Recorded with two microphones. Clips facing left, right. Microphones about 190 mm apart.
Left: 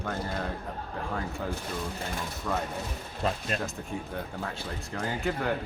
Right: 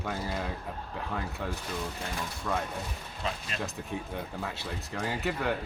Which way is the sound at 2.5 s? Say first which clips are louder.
Left 1 dB; 5° left (ahead or behind).